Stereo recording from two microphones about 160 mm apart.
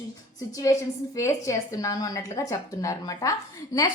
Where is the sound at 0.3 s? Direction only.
20° left (ahead or behind).